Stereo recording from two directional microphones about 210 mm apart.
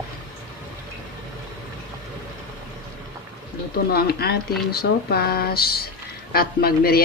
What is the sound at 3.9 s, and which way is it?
A woman's voice, 45° left (ahead or behind).